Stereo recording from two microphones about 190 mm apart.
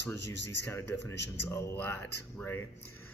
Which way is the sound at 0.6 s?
10° left (ahead or behind).